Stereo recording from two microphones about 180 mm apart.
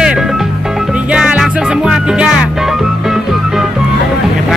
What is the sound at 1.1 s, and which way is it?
Music, 5° right (ahead or behind).